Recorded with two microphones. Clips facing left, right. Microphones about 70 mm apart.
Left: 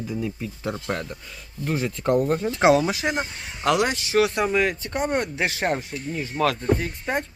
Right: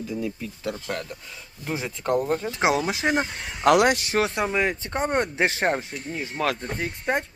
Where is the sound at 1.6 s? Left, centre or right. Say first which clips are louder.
Left 4 dB; centre.